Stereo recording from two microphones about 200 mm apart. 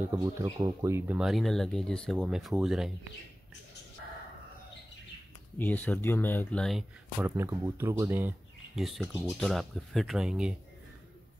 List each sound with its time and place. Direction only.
0.1 s speech: 15° right (ahead or behind)
5.6 s speech: 10° left (ahead or behind)
7.2 s speech: 10° right (ahead or behind)